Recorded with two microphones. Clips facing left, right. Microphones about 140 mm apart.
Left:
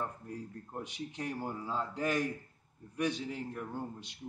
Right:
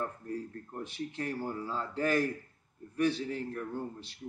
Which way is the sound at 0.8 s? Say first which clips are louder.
Right 4 dB; 15° left (ahead or behind).